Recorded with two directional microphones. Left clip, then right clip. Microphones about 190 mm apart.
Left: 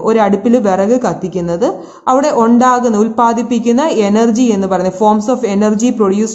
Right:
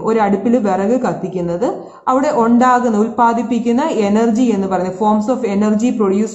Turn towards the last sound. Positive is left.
turn(degrees=25)  # may be behind; listen again after turning